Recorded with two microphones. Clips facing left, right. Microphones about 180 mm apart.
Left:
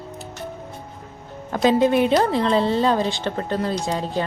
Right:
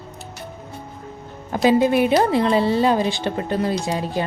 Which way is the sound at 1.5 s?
5° right (ahead or behind).